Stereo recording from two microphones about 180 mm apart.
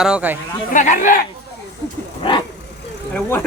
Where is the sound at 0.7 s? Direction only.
45° left (ahead or behind).